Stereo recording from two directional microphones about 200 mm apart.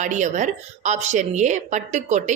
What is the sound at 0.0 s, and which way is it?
A woman's voice, 40° right (ahead or behind).